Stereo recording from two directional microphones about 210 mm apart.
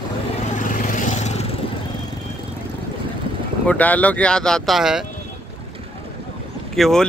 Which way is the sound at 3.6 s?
5° left (ahead or behind).